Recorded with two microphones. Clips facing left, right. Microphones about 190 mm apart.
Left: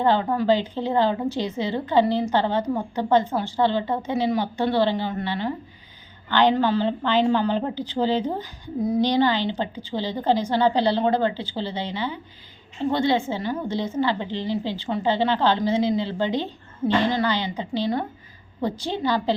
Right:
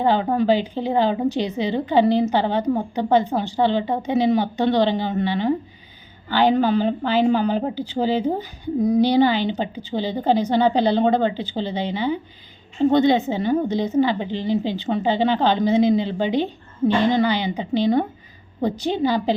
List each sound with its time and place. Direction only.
0.0 s a woman's voice: 15° right (ahead or behind)